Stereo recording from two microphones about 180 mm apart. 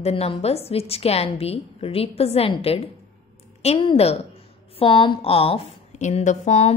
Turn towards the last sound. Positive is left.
turn(degrees=35)  # may be behind; listen again after turning